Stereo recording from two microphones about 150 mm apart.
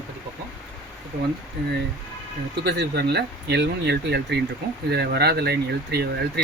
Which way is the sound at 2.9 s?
90° right.